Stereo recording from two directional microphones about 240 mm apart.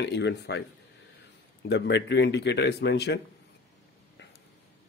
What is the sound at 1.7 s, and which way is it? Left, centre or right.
Speech, left.